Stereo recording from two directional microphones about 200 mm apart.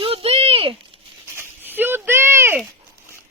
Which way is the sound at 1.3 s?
10° right (ahead or behind).